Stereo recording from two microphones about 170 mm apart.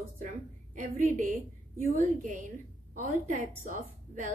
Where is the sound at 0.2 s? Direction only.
50° right (ahead or behind).